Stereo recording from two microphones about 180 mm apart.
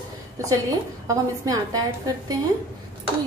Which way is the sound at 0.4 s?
20° right (ahead or behind).